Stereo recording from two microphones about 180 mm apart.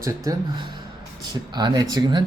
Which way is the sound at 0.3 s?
25° right (ahead or behind).